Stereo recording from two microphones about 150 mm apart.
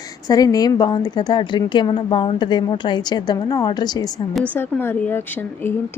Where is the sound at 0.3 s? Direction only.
25° left (ahead or behind).